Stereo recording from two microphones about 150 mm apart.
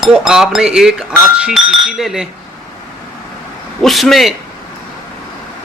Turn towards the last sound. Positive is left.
turn(degrees=0)  # may be behind; listen again after turning